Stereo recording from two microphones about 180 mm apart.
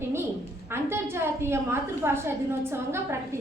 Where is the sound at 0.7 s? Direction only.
15° right (ahead or behind).